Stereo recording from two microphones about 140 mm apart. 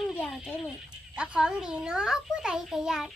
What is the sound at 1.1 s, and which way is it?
A child's voice, 5° right (ahead or behind).